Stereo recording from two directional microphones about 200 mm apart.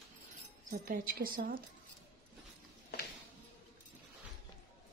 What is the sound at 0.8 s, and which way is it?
Speech, 45° right (ahead or behind).